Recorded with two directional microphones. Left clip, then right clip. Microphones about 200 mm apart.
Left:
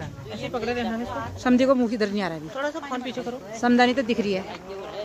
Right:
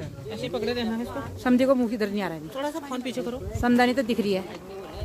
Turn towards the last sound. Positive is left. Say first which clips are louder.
# left 1 dB
turn(degrees=-5)  # may be behind; listen again after turning